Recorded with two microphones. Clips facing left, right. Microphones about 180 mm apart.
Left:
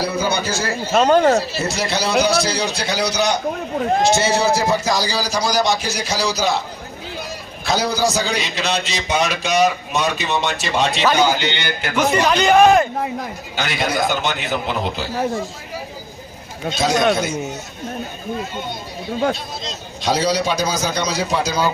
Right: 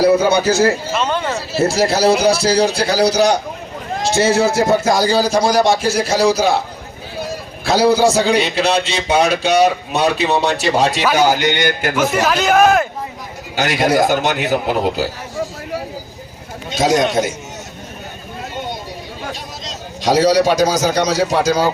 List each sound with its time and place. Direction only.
0.0 s a man's voice: 65° right (ahead or behind)
1.0 s speech: 45° left (ahead or behind)
1.4 s a man's voice: 30° right (ahead or behind)
4.2 s a man's voice: 55° right (ahead or behind)
5.2 s a man's voice: 25° right (ahead or behind)
11.0 s speech: 10° right (ahead or behind)
11.5 s a man's voice: 45° right (ahead or behind)
11.9 s speech: 5° right (ahead or behind)
13.6 s a man's voice: 45° right (ahead or behind)
16.8 s a man's voice: 45° right (ahead or behind)
20.1 s a man's voice: 40° right (ahead or behind)